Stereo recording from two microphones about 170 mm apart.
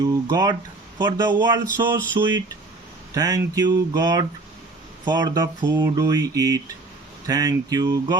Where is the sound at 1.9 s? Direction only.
15° right (ahead or behind).